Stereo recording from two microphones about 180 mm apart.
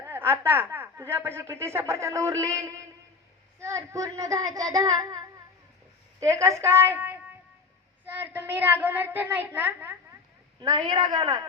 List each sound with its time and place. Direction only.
0.0 s a woman's voice: 10° right (ahead or behind)
10.6 s speech: 25° right (ahead or behind)